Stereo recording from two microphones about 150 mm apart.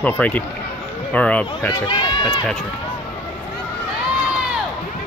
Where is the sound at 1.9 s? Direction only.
30° left (ahead or behind).